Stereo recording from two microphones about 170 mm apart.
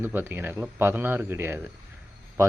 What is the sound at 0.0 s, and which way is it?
Speech, 10° right (ahead or behind).